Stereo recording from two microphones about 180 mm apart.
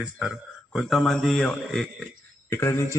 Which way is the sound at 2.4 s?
15° left (ahead or behind).